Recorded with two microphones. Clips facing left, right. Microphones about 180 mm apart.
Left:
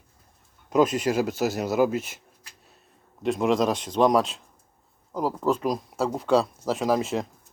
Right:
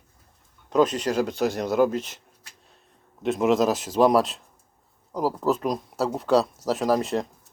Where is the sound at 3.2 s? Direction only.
Centre (ahead or behind).